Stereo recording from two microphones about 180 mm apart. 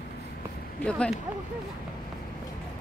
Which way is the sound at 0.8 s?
5° left (ahead or behind).